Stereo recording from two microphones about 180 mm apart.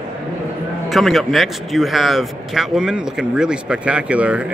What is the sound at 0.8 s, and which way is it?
Speech, centre (ahead or behind).